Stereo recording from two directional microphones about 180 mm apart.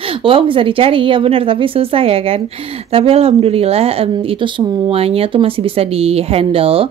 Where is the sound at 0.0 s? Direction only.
30° right (ahead or behind).